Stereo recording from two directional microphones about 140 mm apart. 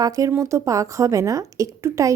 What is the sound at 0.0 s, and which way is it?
A woman's voice, 25° right (ahead or behind).